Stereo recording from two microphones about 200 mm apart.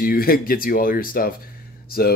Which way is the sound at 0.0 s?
45° left (ahead or behind).